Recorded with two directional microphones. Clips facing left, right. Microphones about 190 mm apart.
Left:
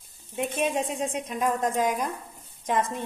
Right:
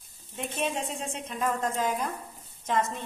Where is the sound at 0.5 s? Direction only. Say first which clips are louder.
Left 3 dB; 15° left (ahead or behind).